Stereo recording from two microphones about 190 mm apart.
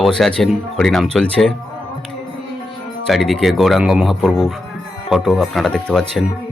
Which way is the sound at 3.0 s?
Centre (ahead or behind).